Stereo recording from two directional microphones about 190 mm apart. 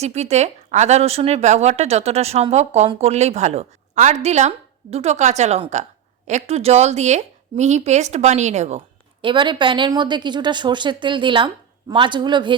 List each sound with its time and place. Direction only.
0.0 s speech: 35° right (ahead or behind)
9.2 s a woman's voice: 25° right (ahead or behind)